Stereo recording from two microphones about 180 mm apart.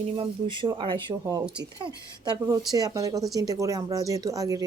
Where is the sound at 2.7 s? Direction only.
20° right (ahead or behind).